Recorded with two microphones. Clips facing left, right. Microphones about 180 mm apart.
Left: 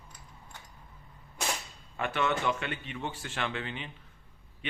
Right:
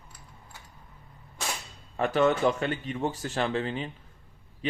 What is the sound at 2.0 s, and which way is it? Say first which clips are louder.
A man's voice: right 7 dB; 40° right (ahead or behind).